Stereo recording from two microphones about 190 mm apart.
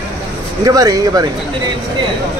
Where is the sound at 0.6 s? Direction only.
20° right (ahead or behind).